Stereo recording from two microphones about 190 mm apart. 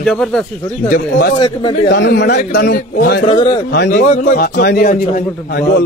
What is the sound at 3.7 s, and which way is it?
A man's voice, 65° left (ahead or behind).